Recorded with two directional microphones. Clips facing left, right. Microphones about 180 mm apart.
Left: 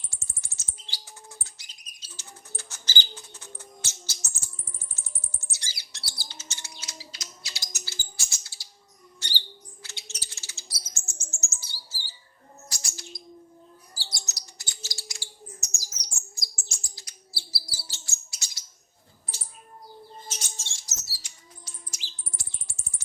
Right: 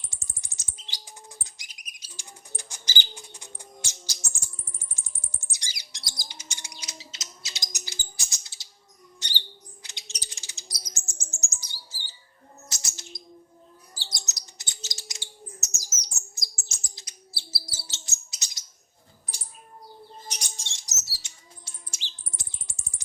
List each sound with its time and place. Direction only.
0.1 s bird: 15° right (ahead or behind)
4.9 s music: 15° right (ahead or behind)
9.2 s a sound: 20° right (ahead or behind)
9.8 s chirp: 15° right (ahead or behind)
12.6 s bird: 20° right (ahead or behind)
20.2 s bird: 15° right (ahead or behind)